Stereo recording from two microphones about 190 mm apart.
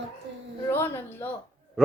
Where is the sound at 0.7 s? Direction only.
10° left (ahead or behind).